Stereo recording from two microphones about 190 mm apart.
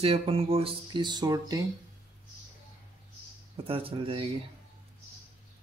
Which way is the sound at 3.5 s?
30° right (ahead or behind).